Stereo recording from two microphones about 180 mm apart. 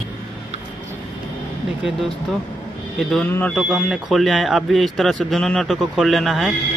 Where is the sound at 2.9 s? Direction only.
Centre (ahead or behind).